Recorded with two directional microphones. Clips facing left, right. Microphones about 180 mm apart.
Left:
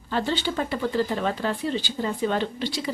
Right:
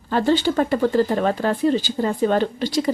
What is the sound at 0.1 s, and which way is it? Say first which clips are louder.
A woman's voice: right 7 dB; 45° right (ahead or behind).